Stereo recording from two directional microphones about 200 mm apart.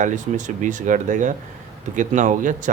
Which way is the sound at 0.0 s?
40° right (ahead or behind).